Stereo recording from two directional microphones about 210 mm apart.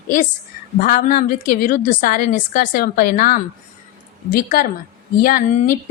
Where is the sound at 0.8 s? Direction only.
40° left (ahead or behind).